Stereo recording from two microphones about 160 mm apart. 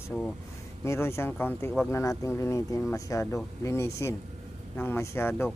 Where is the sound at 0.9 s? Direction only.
15° left (ahead or behind).